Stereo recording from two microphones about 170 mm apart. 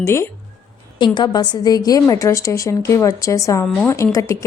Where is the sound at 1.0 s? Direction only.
25° left (ahead or behind).